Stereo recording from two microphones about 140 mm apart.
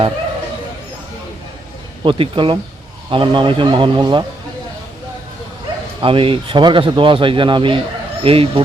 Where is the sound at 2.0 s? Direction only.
40° right (ahead or behind).